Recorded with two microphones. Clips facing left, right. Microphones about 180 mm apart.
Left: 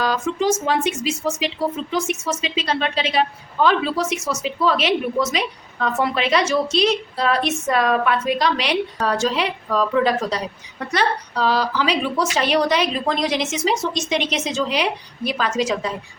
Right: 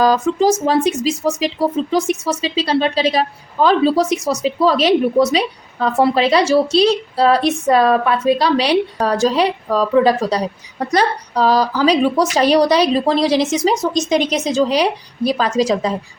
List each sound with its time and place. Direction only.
0.0 s speech: 40° right (ahead or behind)